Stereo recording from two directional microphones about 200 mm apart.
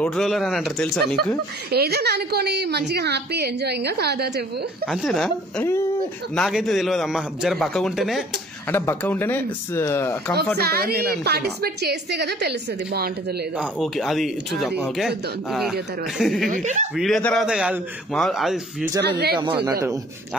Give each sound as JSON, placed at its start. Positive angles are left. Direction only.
{"t": 0.0, "sound": "a man's voice", "side_deg": 0}
{"t": 1.7, "sound": "a woman's voice", "side_deg": -50}
{"t": 4.8, "sound": "a man's voice", "side_deg": 0}
{"t": 8.6, "sound": "speech", "side_deg": 10}
{"t": 10.6, "sound": "a woman's voice", "side_deg": -50}
{"t": 13.6, "sound": "a man's voice", "side_deg": 0}
{"t": 16.4, "sound": "speech", "side_deg": -40}
{"t": 16.9, "sound": "a man's voice", "side_deg": 0}
{"t": 19.0, "sound": "a woman's voice", "side_deg": -55}
{"t": 19.3, "sound": "speech", "side_deg": -20}